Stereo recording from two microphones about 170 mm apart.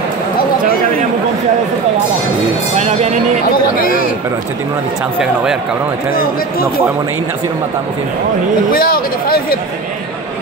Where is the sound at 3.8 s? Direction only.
55° left (ahead or behind).